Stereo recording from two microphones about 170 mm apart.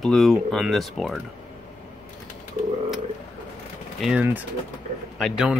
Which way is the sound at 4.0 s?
5° right (ahead or behind).